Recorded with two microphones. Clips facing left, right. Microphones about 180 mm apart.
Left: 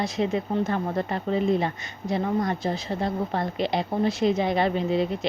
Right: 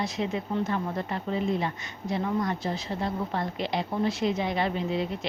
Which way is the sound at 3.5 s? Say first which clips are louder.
Left 4 dB; 25° left (ahead or behind).